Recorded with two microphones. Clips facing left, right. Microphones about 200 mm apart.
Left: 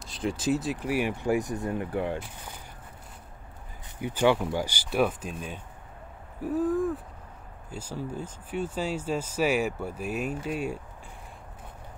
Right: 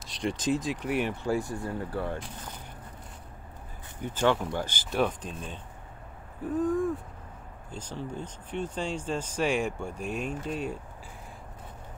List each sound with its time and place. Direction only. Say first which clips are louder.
0.0 s speech: left 1 dB; centre (ahead or behind); by 2.1 s 15° left (ahead or behind)
4.0 s speech: left 2 dB; 15° left (ahead or behind)
6.4 s a sound: left 1 dB; 5° left (ahead or behind)
7.7 s speech: left 2 dB; 10° left (ahead or behind)